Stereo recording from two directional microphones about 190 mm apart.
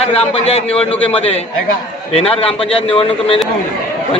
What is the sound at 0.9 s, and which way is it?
Speech, 5° left (ahead or behind).